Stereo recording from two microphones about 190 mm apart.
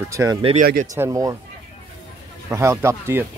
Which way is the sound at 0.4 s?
30° right (ahead or behind).